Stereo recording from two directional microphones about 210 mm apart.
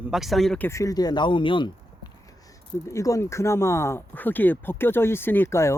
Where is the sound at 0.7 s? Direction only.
15° left (ahead or behind).